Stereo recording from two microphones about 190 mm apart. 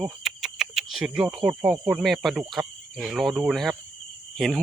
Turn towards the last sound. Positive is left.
turn(degrees=0)  # may be behind; listen again after turning